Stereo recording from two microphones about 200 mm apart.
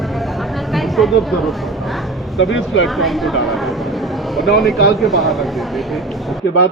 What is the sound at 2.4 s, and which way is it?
Speech, 75° left (ahead or behind).